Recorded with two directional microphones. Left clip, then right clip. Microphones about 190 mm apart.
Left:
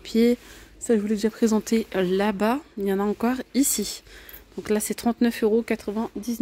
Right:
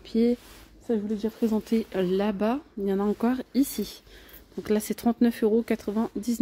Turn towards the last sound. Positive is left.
turn(degrees=-20)  # may be behind; listen again after turning